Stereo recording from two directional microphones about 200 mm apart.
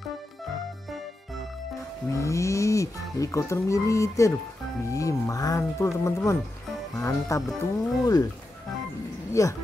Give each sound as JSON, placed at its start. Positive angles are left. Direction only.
{"t": 2.1, "sound": "speech", "side_deg": 15}
{"t": 9.4, "sound": "speech", "side_deg": 15}